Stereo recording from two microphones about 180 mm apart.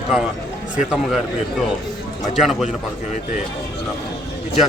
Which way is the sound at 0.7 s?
5° right (ahead or behind).